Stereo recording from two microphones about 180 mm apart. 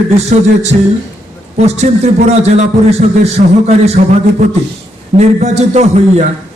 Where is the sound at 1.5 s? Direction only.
40° right (ahead or behind).